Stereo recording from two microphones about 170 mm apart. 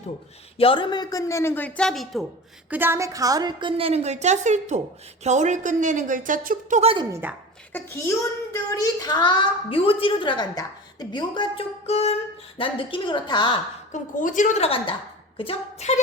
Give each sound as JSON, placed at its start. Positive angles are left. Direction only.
{"t": 0.5, "sound": "a man's voice", "side_deg": 30}
{"t": 2.6, "sound": "a woman's voice", "side_deg": -10}
{"t": 6.9, "sound": "a woman's voice", "side_deg": -25}
{"t": 7.7, "sound": "a child's voice", "side_deg": 15}
{"t": 13.9, "sound": "a woman's voice", "side_deg": 50}
{"t": 15.4, "sound": "a capella", "side_deg": 35}